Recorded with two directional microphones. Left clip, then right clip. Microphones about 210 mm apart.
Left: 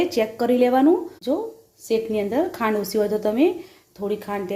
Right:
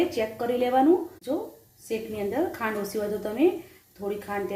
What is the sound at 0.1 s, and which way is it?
Speech, 55° left (ahead or behind).